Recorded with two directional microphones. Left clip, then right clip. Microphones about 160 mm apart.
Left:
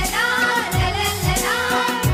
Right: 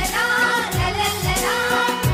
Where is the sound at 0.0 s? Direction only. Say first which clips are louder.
Even; centre (ahead or behind).